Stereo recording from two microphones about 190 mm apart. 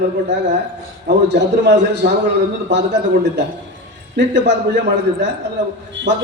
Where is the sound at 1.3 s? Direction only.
65° right (ahead or behind).